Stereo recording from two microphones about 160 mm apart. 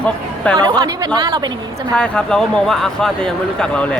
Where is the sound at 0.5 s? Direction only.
25° right (ahead or behind).